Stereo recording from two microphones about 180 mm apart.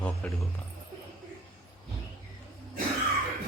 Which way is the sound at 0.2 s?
5° left (ahead or behind).